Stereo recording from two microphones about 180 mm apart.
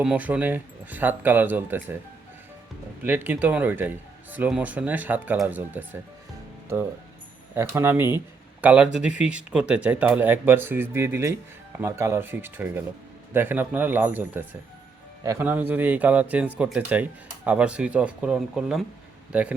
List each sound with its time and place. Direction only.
0.0 s speech: 5° right (ahead or behind)
3.0 s speech: 10° right (ahead or behind)
7.5 s speech: 15° right (ahead or behind)